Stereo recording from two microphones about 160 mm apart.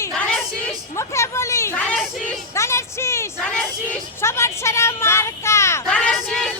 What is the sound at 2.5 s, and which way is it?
Music, 20° left (ahead or behind).